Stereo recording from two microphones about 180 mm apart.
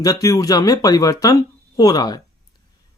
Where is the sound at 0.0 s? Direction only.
20° left (ahead or behind).